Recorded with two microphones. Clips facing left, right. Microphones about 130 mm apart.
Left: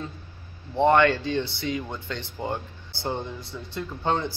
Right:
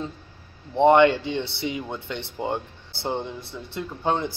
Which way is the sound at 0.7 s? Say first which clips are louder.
Right 3 dB; 20° right (ahead or behind).